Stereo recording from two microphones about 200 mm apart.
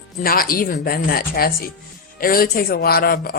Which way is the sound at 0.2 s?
45° left (ahead or behind).